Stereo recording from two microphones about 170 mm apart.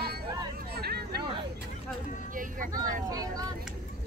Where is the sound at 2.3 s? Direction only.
50° right (ahead or behind).